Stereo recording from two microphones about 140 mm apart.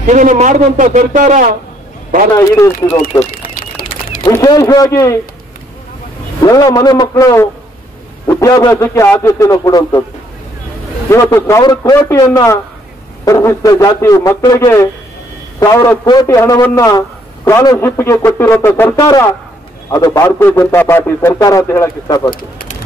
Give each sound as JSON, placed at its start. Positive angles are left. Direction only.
{"t": 0.0, "sound": "speech", "side_deg": -65}
{"t": 2.3, "sound": "a man's voice", "side_deg": 20}
{"t": 3.5, "sound": "a sound", "side_deg": 80}
{"t": 4.3, "sound": "a man's voice", "side_deg": 25}
{"t": 6.4, "sound": "a man's voice", "side_deg": 25}
{"t": 11.1, "sound": "a man's voice", "side_deg": 20}
{"t": 22.3, "sound": "speech", "side_deg": 90}